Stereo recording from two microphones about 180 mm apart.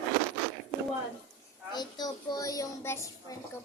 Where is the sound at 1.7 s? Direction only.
20° left (ahead or behind).